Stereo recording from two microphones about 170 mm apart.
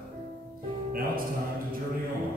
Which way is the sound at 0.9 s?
55° right (ahead or behind).